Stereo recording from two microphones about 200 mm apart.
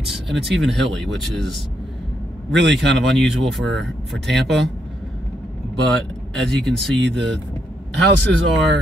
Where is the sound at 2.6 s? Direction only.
60° right (ahead or behind).